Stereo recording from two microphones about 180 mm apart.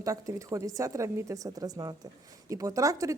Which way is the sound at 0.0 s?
20° right (ahead or behind).